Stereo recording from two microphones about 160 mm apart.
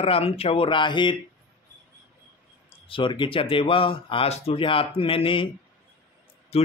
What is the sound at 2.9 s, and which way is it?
Speech, 30° left (ahead or behind).